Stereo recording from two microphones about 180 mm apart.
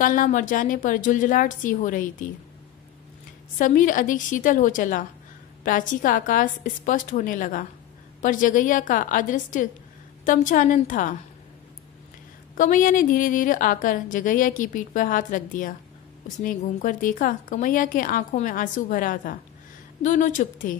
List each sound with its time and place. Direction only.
0.0 s a woman's voice: 45° left (ahead or behind)
3.5 s a woman's voice: 45° left (ahead or behind)
12.5 s a woman's voice: 45° left (ahead or behind)